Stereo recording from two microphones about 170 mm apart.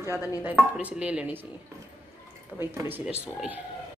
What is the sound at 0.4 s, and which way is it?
Speech, 10° right (ahead or behind).